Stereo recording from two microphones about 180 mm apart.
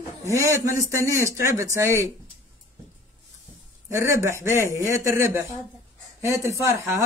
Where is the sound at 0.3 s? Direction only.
15° right (ahead or behind).